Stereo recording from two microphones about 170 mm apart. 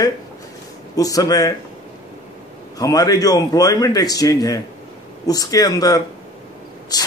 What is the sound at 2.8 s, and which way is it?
A man's voice, 20° left (ahead or behind).